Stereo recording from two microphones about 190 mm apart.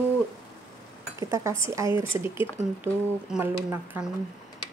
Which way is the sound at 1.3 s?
15° right (ahead or behind).